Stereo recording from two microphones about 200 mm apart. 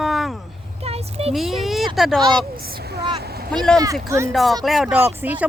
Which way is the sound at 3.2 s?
50° right (ahead or behind).